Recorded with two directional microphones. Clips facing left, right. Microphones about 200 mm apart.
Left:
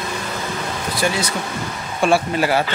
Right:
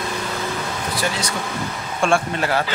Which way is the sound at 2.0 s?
5° left (ahead or behind).